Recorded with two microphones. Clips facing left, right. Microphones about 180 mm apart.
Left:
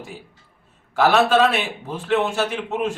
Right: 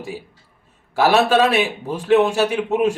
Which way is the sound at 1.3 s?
15° right (ahead or behind).